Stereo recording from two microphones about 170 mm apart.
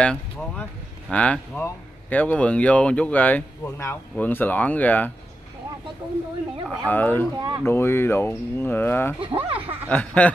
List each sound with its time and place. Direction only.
0.0 s speech: 5° left (ahead or behind)
6.9 s speech: 10° left (ahead or behind)
7.3 s speech: 25° right (ahead or behind)
7.6 s speech: 15° left (ahead or behind)
9.2 s speech: 30° right (ahead or behind)
9.8 s speech: 10° left (ahead or behind)